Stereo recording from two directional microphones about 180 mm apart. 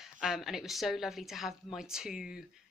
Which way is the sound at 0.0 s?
Centre (ahead or behind).